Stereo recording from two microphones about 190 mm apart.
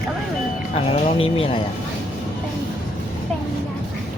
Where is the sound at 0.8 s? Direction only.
35° left (ahead or behind).